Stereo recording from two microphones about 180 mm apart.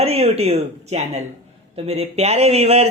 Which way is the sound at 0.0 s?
35° right (ahead or behind).